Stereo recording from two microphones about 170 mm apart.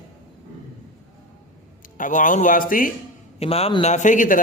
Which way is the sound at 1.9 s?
50° left (ahead or behind).